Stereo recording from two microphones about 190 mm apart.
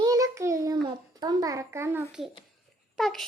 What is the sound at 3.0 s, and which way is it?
Speech, centre (ahead or behind).